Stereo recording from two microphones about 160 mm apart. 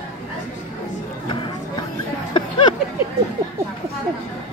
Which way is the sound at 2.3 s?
30° left (ahead or behind).